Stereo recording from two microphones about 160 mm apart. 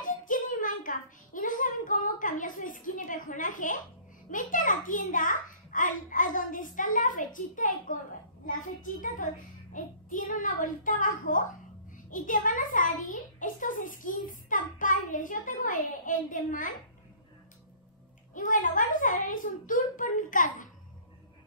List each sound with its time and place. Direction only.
0.0 s a sound: 55° left (ahead or behind)
4.3 s a child's voice: 55° left (ahead or behind)
18.3 s a child's voice: 55° left (ahead or behind)